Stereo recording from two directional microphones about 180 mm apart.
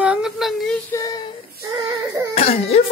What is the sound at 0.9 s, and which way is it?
Child singing, 20° left (ahead or behind).